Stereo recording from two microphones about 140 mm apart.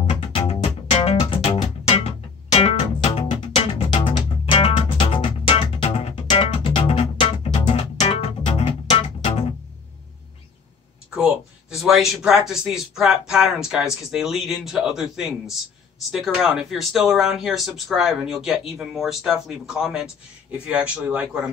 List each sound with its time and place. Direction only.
0.2 s music: 45° left (ahead or behind)
11.7 s speech: centre (ahead or behind)